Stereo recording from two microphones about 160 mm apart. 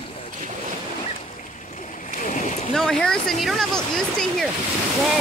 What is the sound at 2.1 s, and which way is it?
Splash, 55° left (ahead or behind).